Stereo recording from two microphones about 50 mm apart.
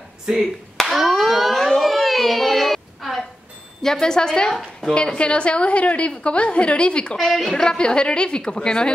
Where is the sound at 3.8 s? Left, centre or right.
Centre.